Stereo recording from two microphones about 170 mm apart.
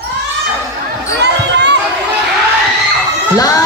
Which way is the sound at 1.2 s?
90° right.